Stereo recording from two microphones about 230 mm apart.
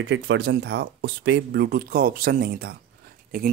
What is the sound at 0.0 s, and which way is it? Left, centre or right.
Speech, right.